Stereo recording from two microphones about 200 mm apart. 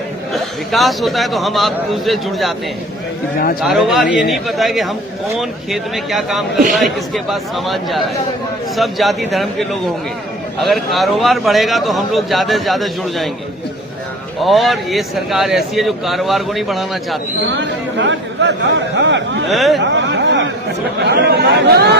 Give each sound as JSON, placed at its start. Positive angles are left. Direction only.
{"t": 0.3, "sound": "a man's voice", "side_deg": 0}
{"t": 3.3, "sound": "a man's voice", "side_deg": 45}
{"t": 3.6, "sound": "a man's voice", "side_deg": 0}
{"t": 14.3, "sound": "a man's voice", "side_deg": 0}
{"t": 17.5, "sound": "speech", "side_deg": -65}
{"t": 19.5, "sound": "a man's voice", "side_deg": 0}
{"t": 19.8, "sound": "a sound", "side_deg": -65}
{"t": 21.0, "sound": "speech", "side_deg": -55}